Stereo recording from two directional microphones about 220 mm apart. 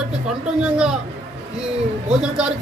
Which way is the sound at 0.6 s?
5° right (ahead or behind).